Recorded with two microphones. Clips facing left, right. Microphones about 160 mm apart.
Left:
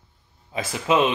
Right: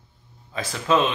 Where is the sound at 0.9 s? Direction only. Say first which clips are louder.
Left 1 dB; 15° left (ahead or behind).